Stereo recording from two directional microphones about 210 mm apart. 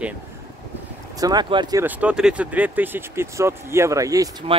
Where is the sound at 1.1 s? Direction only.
20° right (ahead or behind).